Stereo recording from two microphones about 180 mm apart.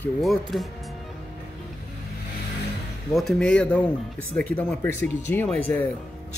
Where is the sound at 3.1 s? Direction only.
Centre (ahead or behind).